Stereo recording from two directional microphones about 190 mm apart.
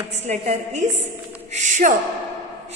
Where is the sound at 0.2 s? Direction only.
35° right (ahead or behind).